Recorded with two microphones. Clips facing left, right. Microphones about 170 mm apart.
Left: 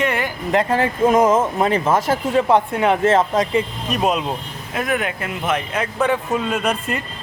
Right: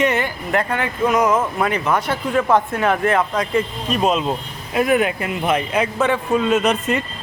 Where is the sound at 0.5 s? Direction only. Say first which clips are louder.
Left 4 dB; 30° left (ahead or behind).